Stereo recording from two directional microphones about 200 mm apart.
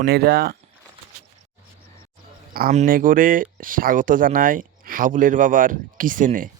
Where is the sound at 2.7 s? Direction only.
40° right (ahead or behind).